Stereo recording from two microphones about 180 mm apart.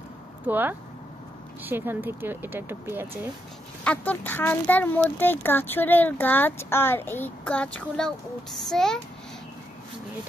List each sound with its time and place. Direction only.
0.5 s speech: 10° right (ahead or behind)
3.8 s a child's voice: 10° left (ahead or behind)